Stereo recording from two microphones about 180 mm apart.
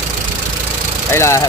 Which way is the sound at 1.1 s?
15° left (ahead or behind).